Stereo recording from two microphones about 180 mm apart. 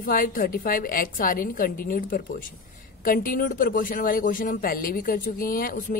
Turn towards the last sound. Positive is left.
turn(degrees=50)  # may be behind; listen again after turning